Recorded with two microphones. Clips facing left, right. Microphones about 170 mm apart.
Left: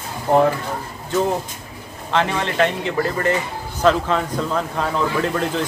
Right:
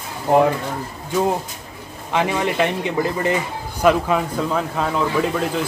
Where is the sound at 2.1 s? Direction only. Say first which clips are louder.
Right 1 dB; 15° right (ahead or behind).